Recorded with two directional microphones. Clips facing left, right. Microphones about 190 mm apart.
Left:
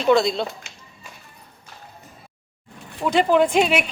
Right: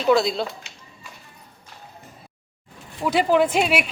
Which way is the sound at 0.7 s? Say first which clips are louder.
Left 1 dB; 50° left (ahead or behind).